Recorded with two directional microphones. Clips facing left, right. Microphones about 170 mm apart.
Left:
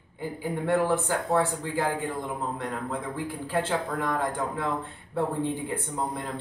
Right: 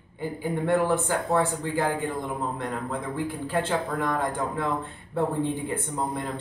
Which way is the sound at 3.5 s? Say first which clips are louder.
Even; 5° left (ahead or behind).